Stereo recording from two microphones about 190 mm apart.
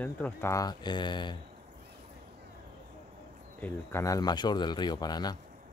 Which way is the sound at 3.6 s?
15° left (ahead or behind).